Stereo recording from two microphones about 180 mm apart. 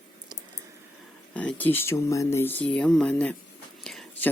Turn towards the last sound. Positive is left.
turn(degrees=5)  # may be behind; listen again after turning